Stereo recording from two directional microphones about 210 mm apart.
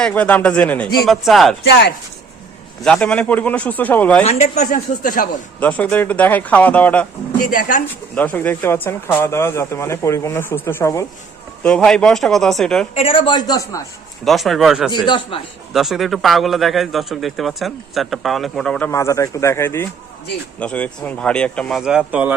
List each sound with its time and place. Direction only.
0.0 s a man's voice: 5° left (ahead or behind)
2.8 s speech: 5° left (ahead or behind)
4.2 s speech: 30° left (ahead or behind)
5.5 s speech: 5° left (ahead or behind)
7.4 s speech: 40° left (ahead or behind)
8.1 s a man's voice: 10° left (ahead or behind)
12.9 s speech: 25° left (ahead or behind)
14.3 s a man's voice: centre (ahead or behind)
15.0 s speech: 20° left (ahead or behind)
15.7 s a man's voice: centre (ahead or behind)